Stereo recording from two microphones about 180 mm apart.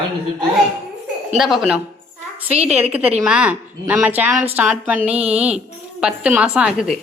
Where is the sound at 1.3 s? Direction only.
Centre (ahead or behind).